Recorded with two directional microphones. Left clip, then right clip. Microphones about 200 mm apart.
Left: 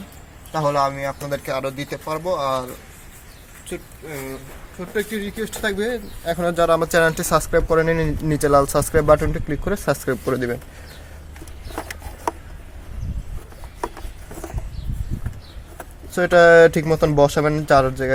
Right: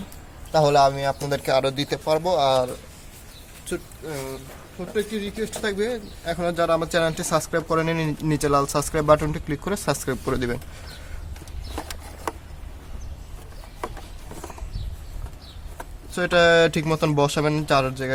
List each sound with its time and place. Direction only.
0.8 s speech: 50° right (ahead or behind)
4.9 s speech: 25° left (ahead or behind); by 10.6 s centre (ahead or behind)
16.1 s speech: 15° left (ahead or behind)